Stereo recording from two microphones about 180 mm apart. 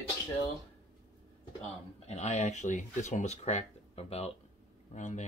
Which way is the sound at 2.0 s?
40° left (ahead or behind).